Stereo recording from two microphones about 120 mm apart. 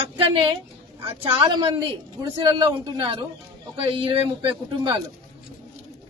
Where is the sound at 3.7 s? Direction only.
50° right (ahead or behind).